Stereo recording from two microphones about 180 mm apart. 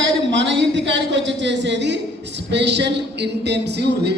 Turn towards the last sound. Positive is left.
turn(degrees=-65)  # may be behind; listen again after turning